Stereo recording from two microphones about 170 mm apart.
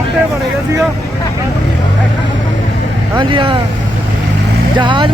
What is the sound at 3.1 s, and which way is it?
Speech, 30° right (ahead or behind).